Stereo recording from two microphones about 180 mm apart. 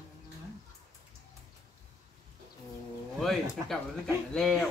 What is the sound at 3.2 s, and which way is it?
Speech, centre (ahead or behind).